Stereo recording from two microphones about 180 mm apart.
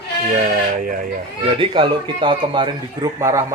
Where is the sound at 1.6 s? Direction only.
30° right (ahead or behind).